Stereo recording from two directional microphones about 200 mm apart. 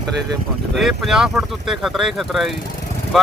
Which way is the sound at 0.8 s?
Centre (ahead or behind).